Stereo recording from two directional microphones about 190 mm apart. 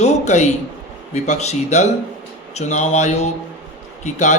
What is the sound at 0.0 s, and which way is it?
A man's voice, 35° left (ahead or behind).